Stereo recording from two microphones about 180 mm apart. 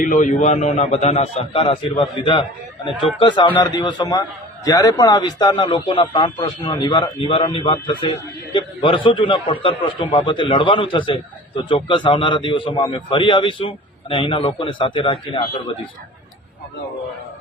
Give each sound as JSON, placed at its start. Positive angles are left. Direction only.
{"t": 0.0, "sound": "a man's voice", "side_deg": 45}